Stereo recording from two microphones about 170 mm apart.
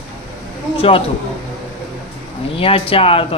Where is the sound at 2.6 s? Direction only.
35° left (ahead or behind).